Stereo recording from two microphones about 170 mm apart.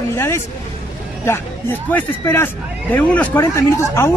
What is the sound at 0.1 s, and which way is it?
Vehicle, 15° left (ahead or behind).